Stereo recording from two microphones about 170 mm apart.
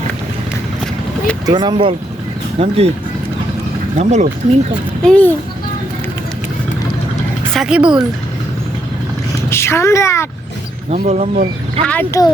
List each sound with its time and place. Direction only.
1.5 s speech: 25° right (ahead or behind)
3.9 s speech: 45° right (ahead or behind)
5.0 s speech: 10° left (ahead or behind)
7.5 s speech: 5° right (ahead or behind)
9.5 s speech: 15° left (ahead or behind)
10.9 s speech: 45° right (ahead or behind)
11.9 s speech: 10° left (ahead or behind)